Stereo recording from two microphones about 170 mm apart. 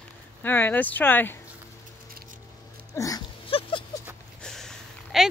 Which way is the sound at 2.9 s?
20° left (ahead or behind).